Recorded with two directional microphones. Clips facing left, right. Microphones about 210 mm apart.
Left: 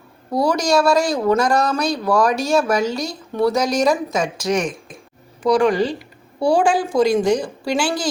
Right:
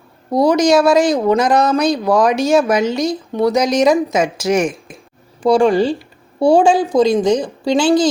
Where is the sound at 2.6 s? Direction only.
20° right (ahead or behind).